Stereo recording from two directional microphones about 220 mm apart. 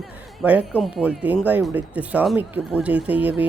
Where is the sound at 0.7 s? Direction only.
Centre (ahead or behind).